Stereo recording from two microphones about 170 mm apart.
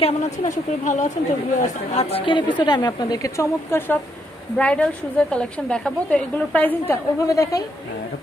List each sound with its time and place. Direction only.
0.0 s a woman's voice: 45° left (ahead or behind); by 7.6 s 20° left (ahead or behind)